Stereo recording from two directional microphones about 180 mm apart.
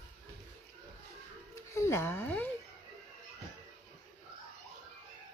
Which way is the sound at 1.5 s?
15° left (ahead or behind).